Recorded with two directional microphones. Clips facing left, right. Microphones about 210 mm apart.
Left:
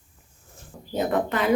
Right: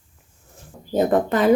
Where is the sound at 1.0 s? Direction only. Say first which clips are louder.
Right 6 dB; 40° right (ahead or behind).